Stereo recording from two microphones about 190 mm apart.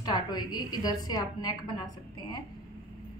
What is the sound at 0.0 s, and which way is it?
Speech, 20° left (ahead or behind).